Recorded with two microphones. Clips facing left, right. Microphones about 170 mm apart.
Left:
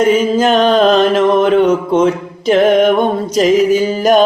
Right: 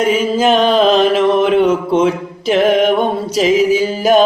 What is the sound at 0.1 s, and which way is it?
Mantra, 5° right (ahead or behind).